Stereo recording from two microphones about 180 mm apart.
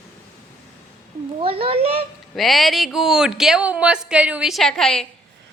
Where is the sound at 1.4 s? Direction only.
30° right (ahead or behind).